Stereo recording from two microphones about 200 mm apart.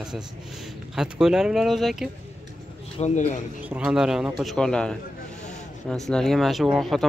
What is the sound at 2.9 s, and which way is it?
Speech, 35° left (ahead or behind).